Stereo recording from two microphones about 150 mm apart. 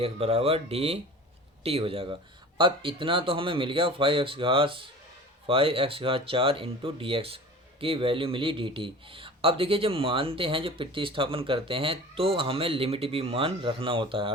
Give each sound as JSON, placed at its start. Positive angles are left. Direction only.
{"t": 0.0, "sound": "speech", "side_deg": -40}